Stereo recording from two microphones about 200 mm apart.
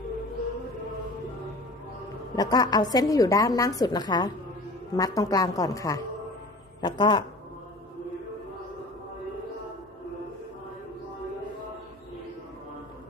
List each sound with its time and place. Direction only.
2.3 s a woman's voice: 20° left (ahead or behind)